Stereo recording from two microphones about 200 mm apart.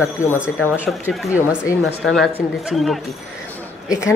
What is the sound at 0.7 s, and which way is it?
Speech, 10° right (ahead or behind).